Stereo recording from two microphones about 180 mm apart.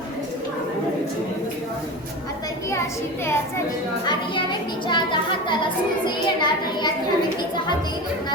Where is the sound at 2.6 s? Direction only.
15° left (ahead or behind).